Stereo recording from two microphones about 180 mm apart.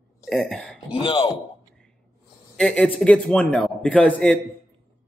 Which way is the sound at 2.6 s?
5° left (ahead or behind).